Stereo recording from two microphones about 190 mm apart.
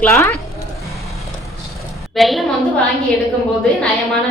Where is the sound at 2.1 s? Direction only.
Centre (ahead or behind).